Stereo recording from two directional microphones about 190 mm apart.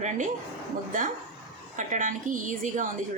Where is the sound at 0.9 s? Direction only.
45° right (ahead or behind).